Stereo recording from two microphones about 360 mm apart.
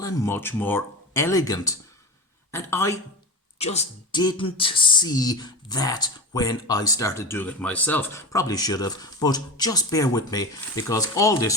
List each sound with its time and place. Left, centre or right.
0.0 s speech: centre